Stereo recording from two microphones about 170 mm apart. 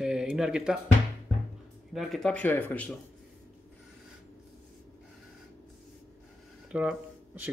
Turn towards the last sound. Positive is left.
turn(degrees=-10)  # may be behind; listen again after turning